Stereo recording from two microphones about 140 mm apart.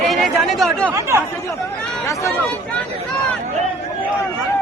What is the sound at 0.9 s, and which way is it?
Chatter, 20° right (ahead or behind).